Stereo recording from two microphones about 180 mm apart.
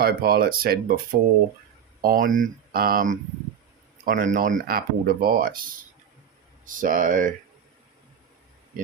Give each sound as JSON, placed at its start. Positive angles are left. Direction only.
{"t": 0.0, "sound": "speech", "side_deg": -60}
{"t": 2.0, "sound": "speech", "side_deg": -50}